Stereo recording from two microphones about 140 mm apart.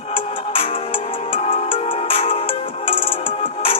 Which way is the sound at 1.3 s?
40° left (ahead or behind).